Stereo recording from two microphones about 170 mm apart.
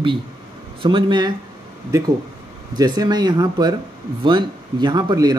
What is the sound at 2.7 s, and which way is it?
Speech, 25° right (ahead or behind).